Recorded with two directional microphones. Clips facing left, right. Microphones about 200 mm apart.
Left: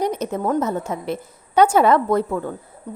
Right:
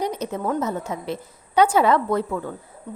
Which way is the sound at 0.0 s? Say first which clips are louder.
Left 3 dB; 50° left (ahead or behind).